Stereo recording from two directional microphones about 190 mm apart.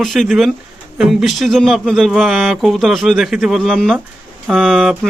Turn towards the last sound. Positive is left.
turn(degrees=0)  # may be behind; listen again after turning